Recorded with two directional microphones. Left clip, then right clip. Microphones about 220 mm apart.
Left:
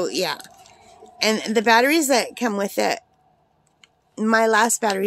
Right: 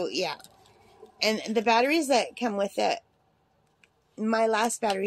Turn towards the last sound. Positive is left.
turn(degrees=30)  # may be behind; listen again after turning